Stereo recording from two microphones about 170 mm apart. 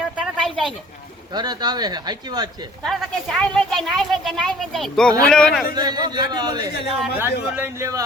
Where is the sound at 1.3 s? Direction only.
25° right (ahead or behind).